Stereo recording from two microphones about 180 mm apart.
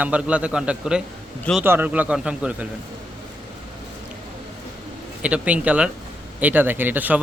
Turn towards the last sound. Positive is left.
turn(degrees=-10)  # may be behind; listen again after turning